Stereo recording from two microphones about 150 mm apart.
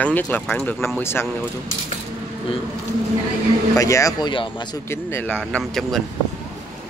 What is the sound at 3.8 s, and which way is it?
Speech, 20° left (ahead or behind).